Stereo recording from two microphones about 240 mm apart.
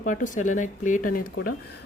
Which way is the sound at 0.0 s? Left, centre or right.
Left.